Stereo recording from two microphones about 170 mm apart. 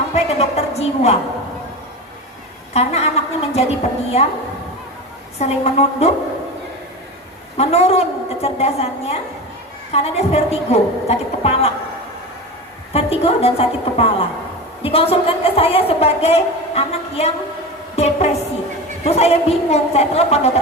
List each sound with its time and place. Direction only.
0.1 s a sound: 40° left (ahead or behind)
2.7 s a woman's voice: 40° left (ahead or behind)
5.4 s a woman's voice: 40° left (ahead or behind)
7.5 s a woman's voice: 35° left (ahead or behind)
12.9 s a woman's voice: 35° left (ahead or behind)